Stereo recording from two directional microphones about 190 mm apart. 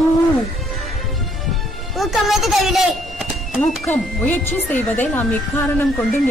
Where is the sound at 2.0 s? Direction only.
Centre (ahead or behind).